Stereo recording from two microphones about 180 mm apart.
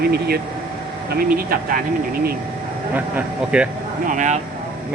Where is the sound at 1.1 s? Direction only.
55° right (ahead or behind).